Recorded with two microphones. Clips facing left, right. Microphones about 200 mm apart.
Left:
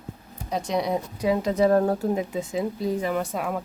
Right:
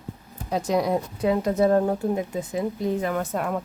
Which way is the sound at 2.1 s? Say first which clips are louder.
Even; 20° left (ahead or behind).